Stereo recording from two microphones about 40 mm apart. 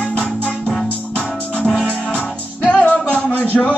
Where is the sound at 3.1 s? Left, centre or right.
Left.